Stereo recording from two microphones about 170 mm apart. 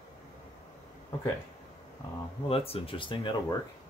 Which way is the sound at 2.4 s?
35° left (ahead or behind).